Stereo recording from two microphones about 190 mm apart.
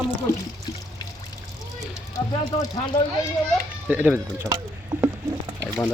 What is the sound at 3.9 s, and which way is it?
Speech, 10° right (ahead or behind).